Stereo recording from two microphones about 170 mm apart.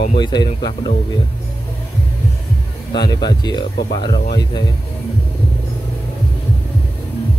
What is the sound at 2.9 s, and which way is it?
Speech, 25° left (ahead or behind).